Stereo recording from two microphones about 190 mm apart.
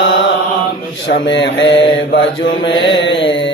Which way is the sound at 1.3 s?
75° left (ahead or behind).